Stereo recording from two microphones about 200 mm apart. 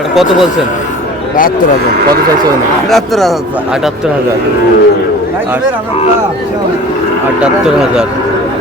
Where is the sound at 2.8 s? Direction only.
Centre (ahead or behind).